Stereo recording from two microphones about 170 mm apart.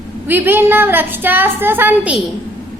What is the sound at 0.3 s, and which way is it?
A woman's voice, 10° right (ahead or behind).